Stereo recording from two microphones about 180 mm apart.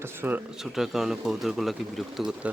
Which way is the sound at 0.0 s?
10° right (ahead or behind).